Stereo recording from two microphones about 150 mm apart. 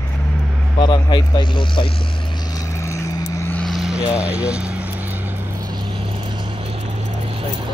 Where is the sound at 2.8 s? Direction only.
20° left (ahead or behind).